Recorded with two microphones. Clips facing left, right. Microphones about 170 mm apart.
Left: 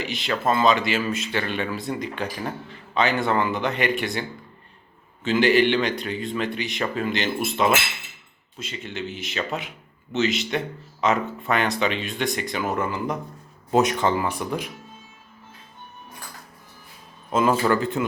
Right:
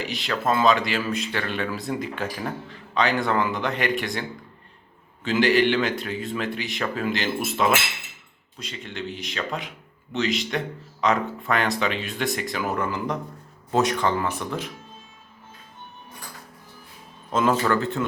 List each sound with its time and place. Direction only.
0.0 s speech: centre (ahead or behind)
13.7 s speech: 20° left (ahead or behind)
17.3 s speech: 10° left (ahead or behind)